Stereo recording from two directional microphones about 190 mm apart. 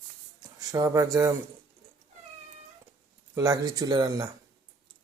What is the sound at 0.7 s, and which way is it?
Speech, 15° right (ahead or behind).